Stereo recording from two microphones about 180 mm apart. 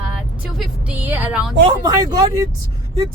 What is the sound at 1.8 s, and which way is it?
Speech, 20° right (ahead or behind).